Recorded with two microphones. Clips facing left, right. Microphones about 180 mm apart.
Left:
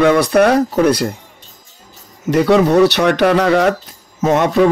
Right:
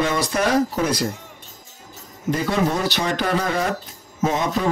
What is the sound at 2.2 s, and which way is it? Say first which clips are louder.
Speech: left 9 dB; 70° left (ahead or behind).